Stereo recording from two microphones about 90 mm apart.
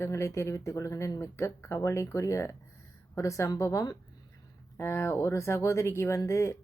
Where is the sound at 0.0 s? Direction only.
30° left (ahead or behind).